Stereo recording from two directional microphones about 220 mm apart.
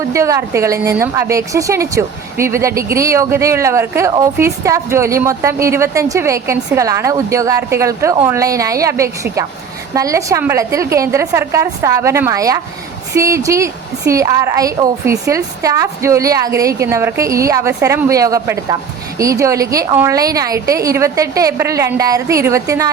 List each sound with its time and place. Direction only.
0.1 s a woman's voice: 15° right (ahead or behind)